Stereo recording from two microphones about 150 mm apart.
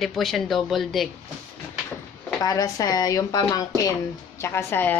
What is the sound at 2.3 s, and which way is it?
A woman's voice, 25° left (ahead or behind).